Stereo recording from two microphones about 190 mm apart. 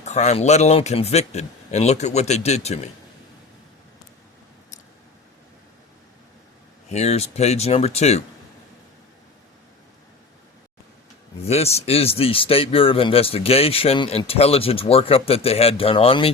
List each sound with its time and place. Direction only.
0.0 s a man's voice: 35° left (ahead or behind)
6.9 s a man's voice: 35° left (ahead or behind)
11.4 s a man's voice: 35° left (ahead or behind)